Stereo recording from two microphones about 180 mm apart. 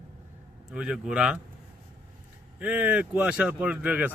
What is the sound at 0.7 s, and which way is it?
Speech, 5° right (ahead or behind).